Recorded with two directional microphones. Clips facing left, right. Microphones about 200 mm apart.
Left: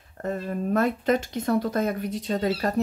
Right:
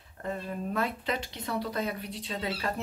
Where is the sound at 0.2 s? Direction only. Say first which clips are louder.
Left 6 dB; 50° left (ahead or behind).